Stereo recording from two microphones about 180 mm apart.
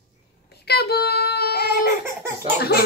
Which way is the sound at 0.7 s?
65° left (ahead or behind).